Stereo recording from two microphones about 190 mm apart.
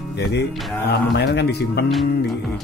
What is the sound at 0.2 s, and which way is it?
Speech, 60° left (ahead or behind).